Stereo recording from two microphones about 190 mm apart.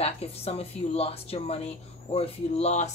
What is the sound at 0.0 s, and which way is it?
Speech, 30° left (ahead or behind).